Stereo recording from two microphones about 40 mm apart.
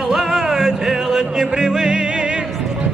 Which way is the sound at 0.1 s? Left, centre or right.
Centre.